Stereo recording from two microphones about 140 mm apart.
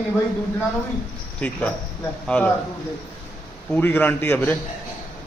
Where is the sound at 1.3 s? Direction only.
10° left (ahead or behind).